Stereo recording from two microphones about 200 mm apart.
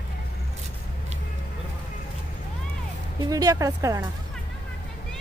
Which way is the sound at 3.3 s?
15° right (ahead or behind).